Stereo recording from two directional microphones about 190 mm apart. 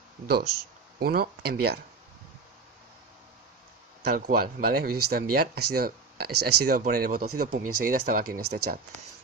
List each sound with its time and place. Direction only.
0.9 s speech: 55° right (ahead or behind)
4.0 s speech: 50° right (ahead or behind)